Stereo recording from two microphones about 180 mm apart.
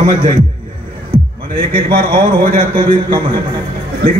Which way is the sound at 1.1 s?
25° right (ahead or behind).